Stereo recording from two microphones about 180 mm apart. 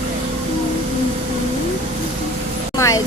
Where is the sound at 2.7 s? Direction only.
15° left (ahead or behind).